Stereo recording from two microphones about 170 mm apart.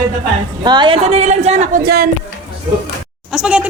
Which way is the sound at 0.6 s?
25° right (ahead or behind).